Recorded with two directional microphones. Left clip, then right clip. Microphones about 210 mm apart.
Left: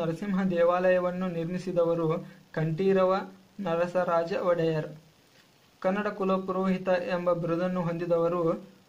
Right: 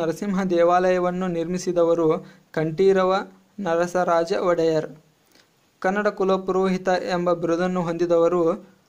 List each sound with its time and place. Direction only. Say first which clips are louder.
0.0 s a man's voice: right 6 dB; 45° right (ahead or behind)